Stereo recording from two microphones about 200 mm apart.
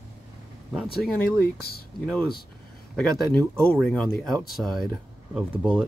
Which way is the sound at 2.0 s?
5° left (ahead or behind).